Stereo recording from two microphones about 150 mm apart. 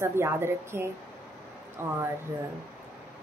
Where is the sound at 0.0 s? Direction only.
20° right (ahead or behind).